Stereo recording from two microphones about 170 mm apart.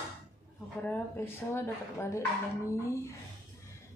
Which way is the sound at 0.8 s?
10° left (ahead or behind).